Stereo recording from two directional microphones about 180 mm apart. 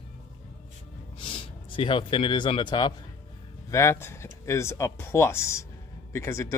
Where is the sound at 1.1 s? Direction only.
30° left (ahead or behind).